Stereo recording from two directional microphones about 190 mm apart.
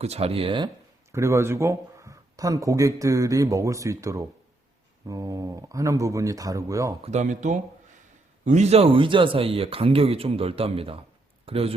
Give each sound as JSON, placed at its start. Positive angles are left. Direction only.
{"t": 0.0, "sound": "speech", "side_deg": -30}
{"t": 1.1, "sound": "speech", "side_deg": -15}
{"t": 7.0, "sound": "speech", "side_deg": -35}